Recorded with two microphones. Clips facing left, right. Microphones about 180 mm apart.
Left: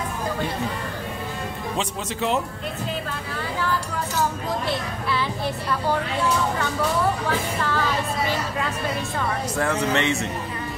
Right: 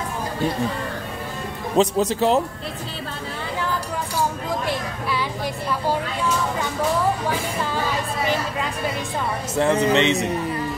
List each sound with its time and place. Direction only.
1.8 s speech: 35° right (ahead or behind)
7.2 s music: 15° right (ahead or behind)
9.6 s speech: 20° right (ahead or behind)